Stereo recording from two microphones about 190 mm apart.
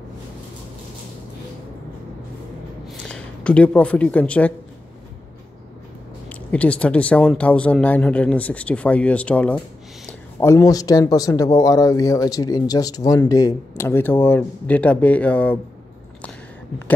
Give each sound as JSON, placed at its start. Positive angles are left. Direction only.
{"t": 2.9, "sound": "speech", "side_deg": 5}
{"t": 6.2, "sound": "speech", "side_deg": 5}